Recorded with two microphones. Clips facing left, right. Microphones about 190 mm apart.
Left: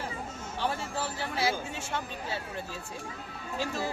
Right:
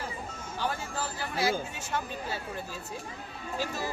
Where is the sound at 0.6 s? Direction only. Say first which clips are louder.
Left 1 dB; 30° left (ahead or behind).